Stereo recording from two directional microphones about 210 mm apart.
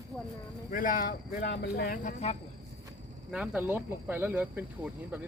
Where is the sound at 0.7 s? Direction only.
40° left (ahead or behind).